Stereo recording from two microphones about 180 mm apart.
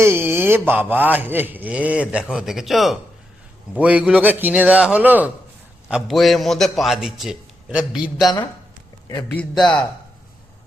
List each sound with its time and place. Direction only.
0.0 s a man's voice: 15° right (ahead or behind)
8.2 s speech: 20° left (ahead or behind)
9.3 s a man's voice: 5° left (ahead or behind)